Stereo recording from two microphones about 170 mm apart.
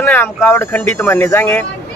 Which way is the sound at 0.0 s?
15° left (ahead or behind).